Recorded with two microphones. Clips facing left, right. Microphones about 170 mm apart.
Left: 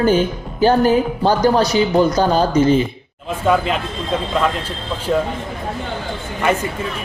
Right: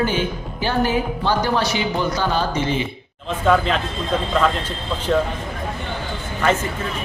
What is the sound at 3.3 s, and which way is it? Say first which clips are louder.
Speech: left 1 dB; 5° left (ahead or behind).